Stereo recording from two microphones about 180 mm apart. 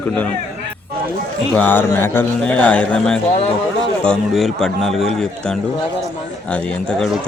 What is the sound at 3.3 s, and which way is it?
Speech, 35° left (ahead or behind).